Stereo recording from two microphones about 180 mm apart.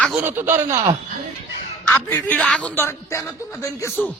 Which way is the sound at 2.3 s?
5° left (ahead or behind).